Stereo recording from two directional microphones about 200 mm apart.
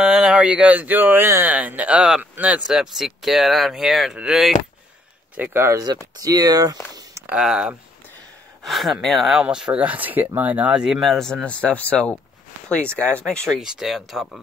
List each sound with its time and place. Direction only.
0.0 s speech: 5° right (ahead or behind)
7.0 s a sound: 15° right (ahead or behind)
7.3 s speech: 5° right (ahead or behind)